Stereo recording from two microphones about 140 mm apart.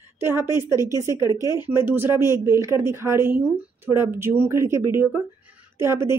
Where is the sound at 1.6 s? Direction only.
15° right (ahead or behind).